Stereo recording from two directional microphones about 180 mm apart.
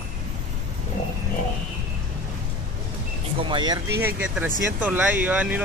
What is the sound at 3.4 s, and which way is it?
Speech, 25° right (ahead or behind).